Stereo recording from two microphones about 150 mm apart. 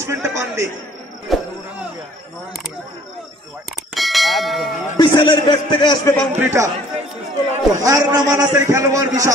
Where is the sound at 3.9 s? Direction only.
Centre (ahead or behind).